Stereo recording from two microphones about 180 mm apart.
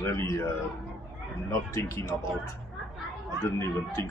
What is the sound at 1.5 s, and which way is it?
Speech, 15° left (ahead or behind).